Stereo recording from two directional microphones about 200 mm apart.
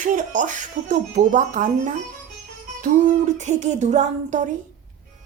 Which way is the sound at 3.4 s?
35° right (ahead or behind).